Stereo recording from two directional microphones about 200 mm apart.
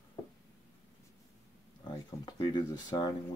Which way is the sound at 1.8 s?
20° left (ahead or behind).